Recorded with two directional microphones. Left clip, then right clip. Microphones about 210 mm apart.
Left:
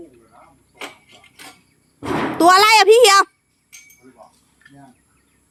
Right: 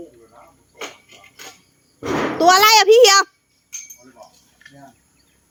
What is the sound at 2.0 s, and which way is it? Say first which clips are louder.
A child's voice: left 1 dB; 25° left (ahead or behind).